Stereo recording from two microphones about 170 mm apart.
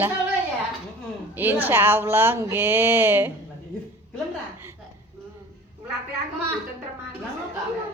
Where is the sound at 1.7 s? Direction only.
10° right (ahead or behind).